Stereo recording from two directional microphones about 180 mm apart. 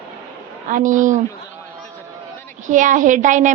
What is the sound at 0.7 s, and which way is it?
Speech, 45° right (ahead or behind).